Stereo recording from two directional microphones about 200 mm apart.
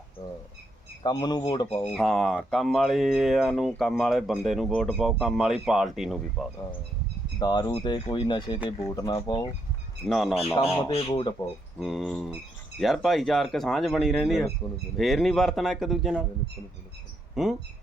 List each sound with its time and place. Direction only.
1.0 s speech: 20° left (ahead or behind)
1.9 s speech: centre (ahead or behind)
7.3 s speech: 20° left (ahead or behind)
10.1 s speech: centre (ahead or behind)
10.8 s speech: 25° left (ahead or behind)
11.8 s speech: centre (ahead or behind)
17.3 s speech: centre (ahead or behind)